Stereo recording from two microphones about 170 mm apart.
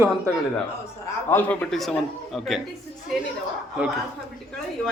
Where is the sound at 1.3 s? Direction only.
10° left (ahead or behind).